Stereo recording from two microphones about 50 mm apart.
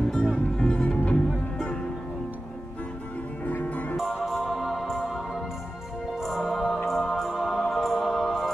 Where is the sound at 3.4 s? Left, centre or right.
Left.